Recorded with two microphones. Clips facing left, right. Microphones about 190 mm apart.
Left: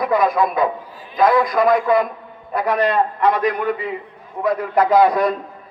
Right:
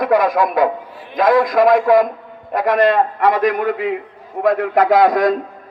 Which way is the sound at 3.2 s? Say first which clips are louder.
Right 2 dB; 90° right.